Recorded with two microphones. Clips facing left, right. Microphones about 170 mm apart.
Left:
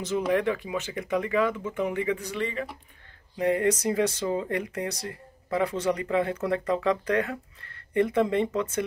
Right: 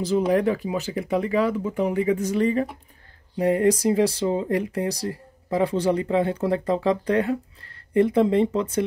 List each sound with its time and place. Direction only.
0.0 s speech: 35° right (ahead or behind)